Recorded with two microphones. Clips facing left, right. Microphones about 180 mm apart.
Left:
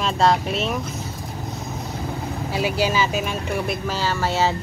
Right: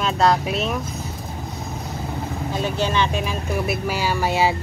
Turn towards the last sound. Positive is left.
turn(degrees=-15)  # may be behind; listen again after turning